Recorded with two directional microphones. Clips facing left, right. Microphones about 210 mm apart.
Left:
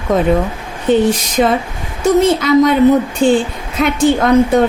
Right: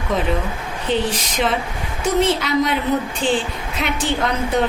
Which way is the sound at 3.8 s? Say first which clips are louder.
Left 9 dB; 50° left (ahead or behind).